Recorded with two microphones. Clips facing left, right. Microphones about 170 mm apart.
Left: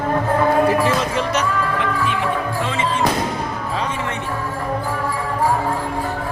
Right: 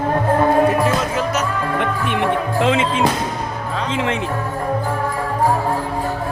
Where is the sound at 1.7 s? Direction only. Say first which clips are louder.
Right 1 dB; 65° right (ahead or behind); by 3.0 s 90° right.